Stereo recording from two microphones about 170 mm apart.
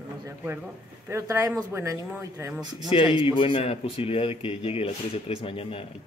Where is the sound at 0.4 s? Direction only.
10° right (ahead or behind).